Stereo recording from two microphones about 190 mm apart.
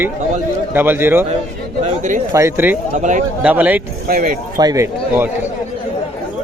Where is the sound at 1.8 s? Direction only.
40° right (ahead or behind).